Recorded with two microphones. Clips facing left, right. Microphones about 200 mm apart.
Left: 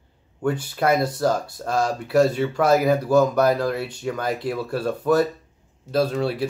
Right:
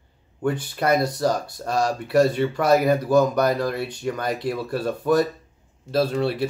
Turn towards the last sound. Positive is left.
turn(degrees=0)  # may be behind; listen again after turning